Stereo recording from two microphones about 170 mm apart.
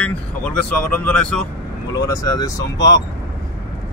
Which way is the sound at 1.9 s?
20° left (ahead or behind).